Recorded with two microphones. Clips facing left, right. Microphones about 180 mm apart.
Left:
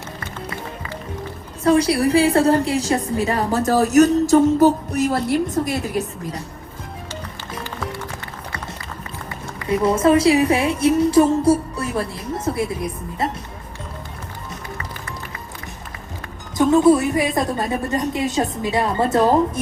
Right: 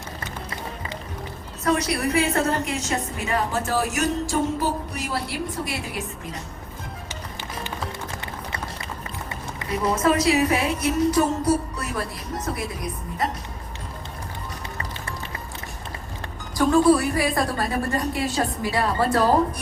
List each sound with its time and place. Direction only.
1.6 s a woman's voice: 30° left (ahead or behind)
9.6 s a woman's voice: 30° left (ahead or behind)
16.6 s a woman's voice: 20° left (ahead or behind)